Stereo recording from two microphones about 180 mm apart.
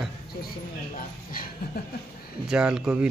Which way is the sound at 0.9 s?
50° left (ahead or behind).